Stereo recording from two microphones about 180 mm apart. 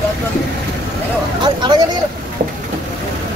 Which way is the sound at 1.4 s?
25° right (ahead or behind).